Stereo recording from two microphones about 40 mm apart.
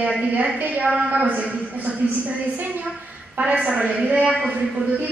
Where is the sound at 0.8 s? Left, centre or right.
Right.